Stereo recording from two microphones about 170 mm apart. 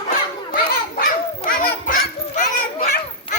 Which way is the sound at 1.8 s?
50° left (ahead or behind).